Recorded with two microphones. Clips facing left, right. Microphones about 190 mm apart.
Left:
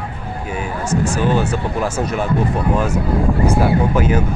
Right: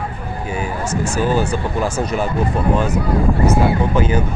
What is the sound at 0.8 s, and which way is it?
Speech, centre (ahead or behind).